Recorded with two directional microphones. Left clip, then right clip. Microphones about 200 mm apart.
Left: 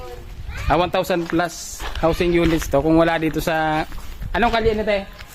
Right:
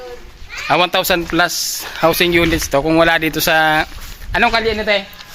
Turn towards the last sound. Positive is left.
turn(degrees=5)  # may be behind; listen again after turning